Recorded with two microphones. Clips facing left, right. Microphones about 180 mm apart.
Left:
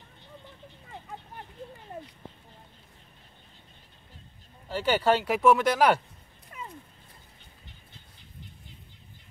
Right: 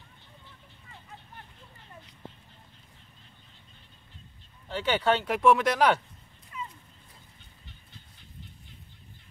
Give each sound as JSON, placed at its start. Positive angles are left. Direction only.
{"t": 4.6, "sound": "speech", "side_deg": 5}
{"t": 6.5, "sound": "dog", "side_deg": 45}